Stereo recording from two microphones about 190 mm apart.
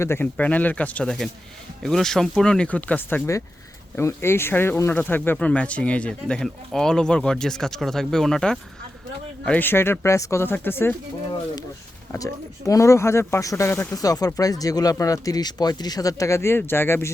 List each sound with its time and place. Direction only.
0.0 s speech: 10° left (ahead or behind)
12.1 s speech: 15° left (ahead or behind)